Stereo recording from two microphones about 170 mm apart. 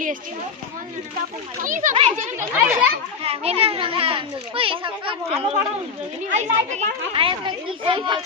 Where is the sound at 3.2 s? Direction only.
35° right (ahead or behind).